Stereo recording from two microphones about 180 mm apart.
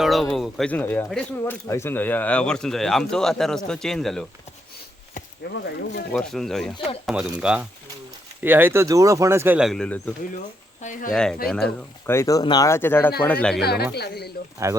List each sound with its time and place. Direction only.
0.0 s speech: centre (ahead or behind)
5.6 s speech: 70° left (ahead or behind)
6.1 s speech: 5° left (ahead or behind)
6.7 s speech: 35° left (ahead or behind)
7.0 s speech: 5° right (ahead or behind)
10.8 s speech: 45° left (ahead or behind)
11.1 s speech: 5° left (ahead or behind)
12.1 s speech: 20° left (ahead or behind)
13.6 s speech: 60° left (ahead or behind)
14.6 s speech: 15° right (ahead or behind)